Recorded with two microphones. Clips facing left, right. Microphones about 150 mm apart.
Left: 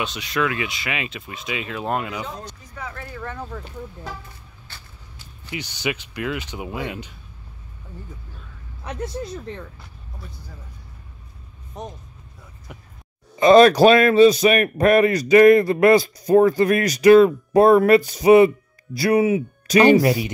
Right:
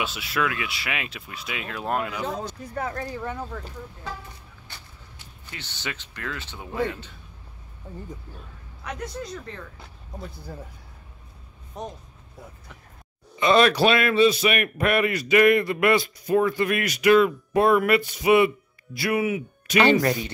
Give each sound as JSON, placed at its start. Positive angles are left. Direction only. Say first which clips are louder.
{"t": 0.0, "sound": "speech", "louder": "left 3 dB", "side_deg": -5}
{"t": 2.2, "sound": "speech", "louder": "right 5 dB", "side_deg": -50}
{"t": 3.2, "sound": "speech", "louder": "right 1 dB", "side_deg": -15}
{"t": 5.5, "sound": "speech", "louder": "left 9 dB", "side_deg": 10}
{"t": 13.4, "sound": "a man's voice", "louder": "left 7 dB", "side_deg": 40}
{"t": 19.8, "sound": "speech", "louder": "left 5 dB", "side_deg": 10}